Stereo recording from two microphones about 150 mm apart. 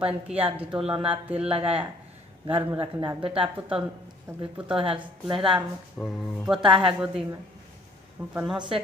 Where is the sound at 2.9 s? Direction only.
35° right (ahead or behind).